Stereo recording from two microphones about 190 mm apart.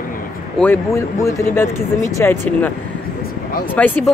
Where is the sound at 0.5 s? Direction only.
10° left (ahead or behind).